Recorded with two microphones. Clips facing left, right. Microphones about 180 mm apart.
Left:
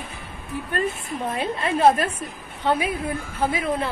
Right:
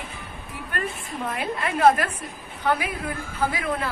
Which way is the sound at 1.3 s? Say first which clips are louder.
Left 3 dB; 25° left (ahead or behind).